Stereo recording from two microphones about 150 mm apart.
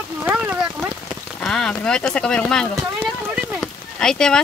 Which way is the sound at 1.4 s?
5° left (ahead or behind).